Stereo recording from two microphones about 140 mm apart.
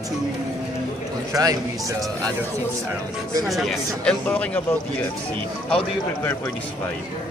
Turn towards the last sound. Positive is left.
turn(degrees=10)  # may be behind; listen again after turning